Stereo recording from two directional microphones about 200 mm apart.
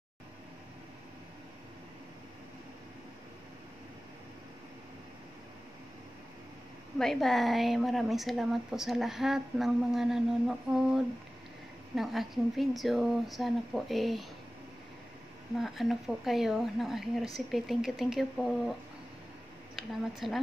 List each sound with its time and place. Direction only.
7.0 s speech: centre (ahead or behind)
11.9 s speech: centre (ahead or behind)
15.5 s speech: centre (ahead or behind)